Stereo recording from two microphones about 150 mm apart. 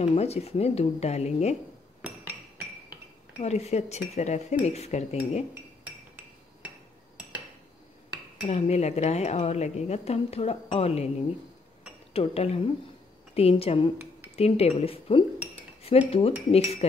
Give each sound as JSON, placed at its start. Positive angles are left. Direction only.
{"t": 0.0, "sound": "speech", "side_deg": 45}
{"t": 2.0, "sound": "hammer", "side_deg": -10}
{"t": 3.3, "sound": "speech", "side_deg": 45}
{"t": 8.4, "sound": "speech", "side_deg": 45}
{"t": 12.1, "sound": "speech", "side_deg": 40}